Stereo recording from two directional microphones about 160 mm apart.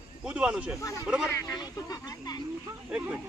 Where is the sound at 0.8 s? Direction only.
20° left (ahead or behind).